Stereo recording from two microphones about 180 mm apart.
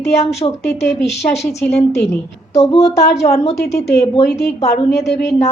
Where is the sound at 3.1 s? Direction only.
35° left (ahead or behind).